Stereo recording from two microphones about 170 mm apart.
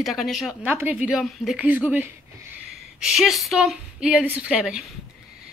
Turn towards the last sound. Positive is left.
turn(degrees=-5)  # may be behind; listen again after turning